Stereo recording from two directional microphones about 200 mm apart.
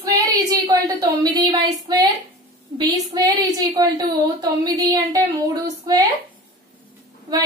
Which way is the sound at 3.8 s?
20° right (ahead or behind).